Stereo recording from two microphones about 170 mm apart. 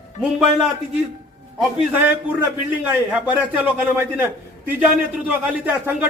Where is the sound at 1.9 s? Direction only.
10° right (ahead or behind).